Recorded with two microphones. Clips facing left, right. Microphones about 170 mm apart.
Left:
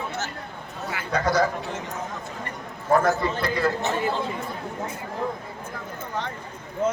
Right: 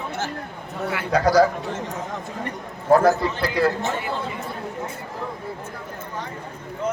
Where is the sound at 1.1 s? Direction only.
35° right (ahead or behind).